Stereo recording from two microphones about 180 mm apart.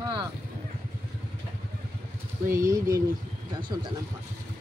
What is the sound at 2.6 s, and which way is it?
Speech, 15° right (ahead or behind).